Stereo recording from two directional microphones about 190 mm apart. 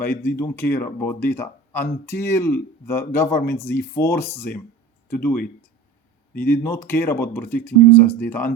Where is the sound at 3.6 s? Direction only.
60° left (ahead or behind).